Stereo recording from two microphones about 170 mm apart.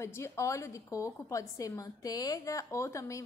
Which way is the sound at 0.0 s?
15° left (ahead or behind).